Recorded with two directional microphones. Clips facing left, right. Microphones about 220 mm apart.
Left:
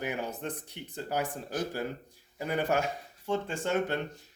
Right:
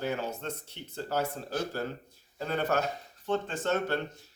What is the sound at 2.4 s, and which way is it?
Speech, 15° left (ahead or behind).